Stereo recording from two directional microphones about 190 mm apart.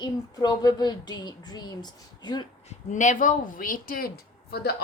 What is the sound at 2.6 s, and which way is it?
A woman's voice, 40° left (ahead or behind).